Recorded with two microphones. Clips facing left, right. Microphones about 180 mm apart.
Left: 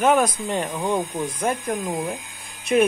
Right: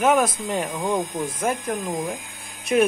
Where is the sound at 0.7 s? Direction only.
10° left (ahead or behind).